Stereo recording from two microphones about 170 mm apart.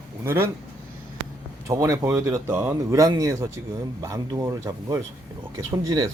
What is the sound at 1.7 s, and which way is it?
Speech, 20° right (ahead or behind).